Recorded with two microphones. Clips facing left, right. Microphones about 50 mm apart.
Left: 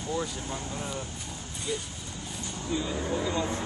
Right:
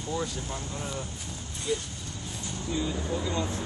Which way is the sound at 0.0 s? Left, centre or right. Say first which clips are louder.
Even; centre.